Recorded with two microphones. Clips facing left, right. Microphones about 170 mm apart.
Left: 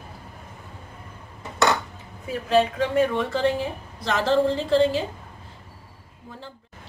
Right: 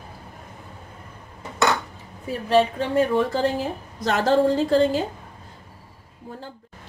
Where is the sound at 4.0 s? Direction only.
45° right (ahead or behind).